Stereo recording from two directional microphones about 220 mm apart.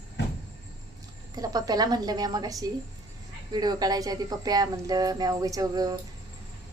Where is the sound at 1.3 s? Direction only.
15° right (ahead or behind).